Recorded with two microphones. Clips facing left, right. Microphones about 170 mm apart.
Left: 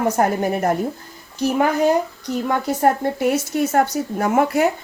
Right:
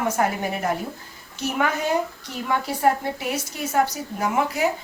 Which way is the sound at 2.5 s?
45° left (ahead or behind).